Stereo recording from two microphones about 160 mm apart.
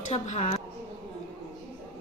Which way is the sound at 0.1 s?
45° left (ahead or behind).